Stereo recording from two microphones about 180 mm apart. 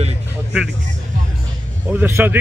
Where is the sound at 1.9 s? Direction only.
10° right (ahead or behind).